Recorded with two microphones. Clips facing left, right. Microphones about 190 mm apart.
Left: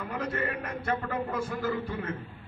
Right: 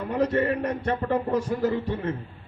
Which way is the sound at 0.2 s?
35° right (ahead or behind).